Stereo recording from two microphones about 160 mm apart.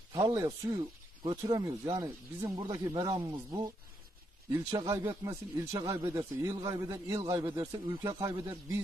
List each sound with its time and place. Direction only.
0.1 s speech: 25° right (ahead or behind)